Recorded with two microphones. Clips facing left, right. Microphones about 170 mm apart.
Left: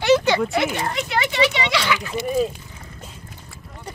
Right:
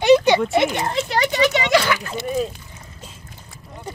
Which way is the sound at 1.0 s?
40° right (ahead or behind).